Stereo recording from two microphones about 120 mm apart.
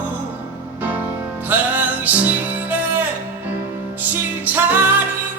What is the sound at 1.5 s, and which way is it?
Music, 15° right (ahead or behind).